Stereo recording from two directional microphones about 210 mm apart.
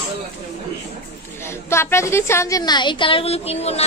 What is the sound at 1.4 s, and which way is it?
A woman's voice, 10° left (ahead or behind).